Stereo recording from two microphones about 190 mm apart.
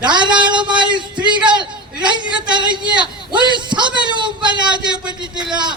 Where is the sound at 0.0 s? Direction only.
25° right (ahead or behind).